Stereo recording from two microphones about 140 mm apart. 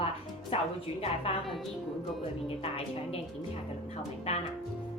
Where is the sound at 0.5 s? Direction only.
45° left (ahead or behind).